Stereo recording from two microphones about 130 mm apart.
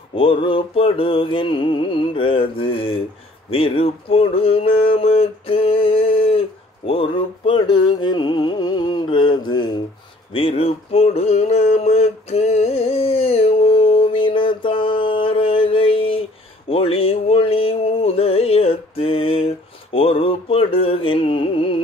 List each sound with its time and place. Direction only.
0.1 s speech: 45° left (ahead or behind)
6.9 s music: 45° left (ahead or behind)
10.3 s a sound: 45° left (ahead or behind)